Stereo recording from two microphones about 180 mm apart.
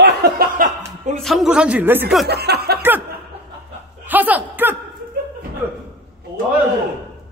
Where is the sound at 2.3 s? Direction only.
65° right (ahead or behind).